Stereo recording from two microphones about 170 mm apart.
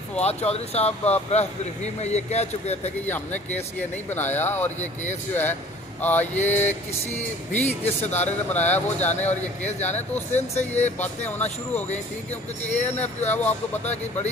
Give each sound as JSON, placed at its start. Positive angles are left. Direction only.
{"t": 0.2, "sound": "speech", "side_deg": 40}
{"t": 3.1, "sound": "speech", "side_deg": 10}
{"t": 9.0, "sound": "speech", "side_deg": 40}